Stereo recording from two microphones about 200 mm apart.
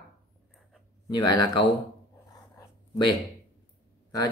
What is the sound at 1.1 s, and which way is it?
Speech, 20° left (ahead or behind).